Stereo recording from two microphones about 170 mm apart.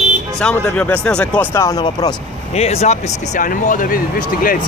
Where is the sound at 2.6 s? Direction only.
40° left (ahead or behind); by 4.5 s 55° left (ahead or behind).